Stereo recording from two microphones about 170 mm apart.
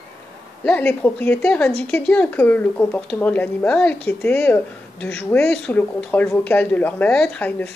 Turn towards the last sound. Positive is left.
turn(degrees=10)  # may be behind; listen again after turning